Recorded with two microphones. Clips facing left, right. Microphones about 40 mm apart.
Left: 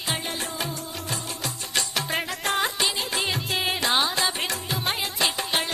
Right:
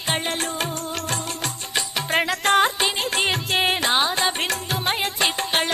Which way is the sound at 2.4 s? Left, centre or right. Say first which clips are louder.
Right 8 dB; right.